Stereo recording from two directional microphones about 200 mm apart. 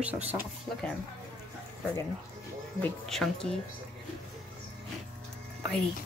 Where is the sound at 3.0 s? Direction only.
Centre (ahead or behind).